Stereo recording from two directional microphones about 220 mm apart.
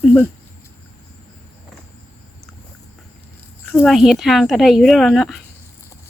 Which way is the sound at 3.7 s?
Centre (ahead or behind).